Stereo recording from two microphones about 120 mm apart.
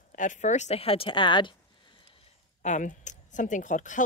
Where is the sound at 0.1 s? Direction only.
90° left; by 1.5 s 45° left (ahead or behind).